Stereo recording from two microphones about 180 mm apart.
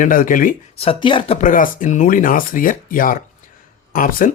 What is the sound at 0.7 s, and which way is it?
Speech, 30° left (ahead or behind).